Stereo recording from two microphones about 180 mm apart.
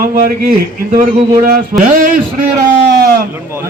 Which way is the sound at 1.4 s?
55° right (ahead or behind).